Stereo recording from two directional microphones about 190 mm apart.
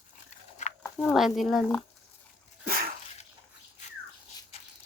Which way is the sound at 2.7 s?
50° right (ahead or behind).